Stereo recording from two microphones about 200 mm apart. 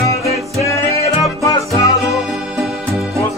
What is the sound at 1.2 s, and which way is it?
Music, 15° left (ahead or behind).